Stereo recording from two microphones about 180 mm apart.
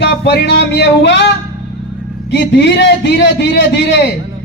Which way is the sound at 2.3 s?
75° left (ahead or behind).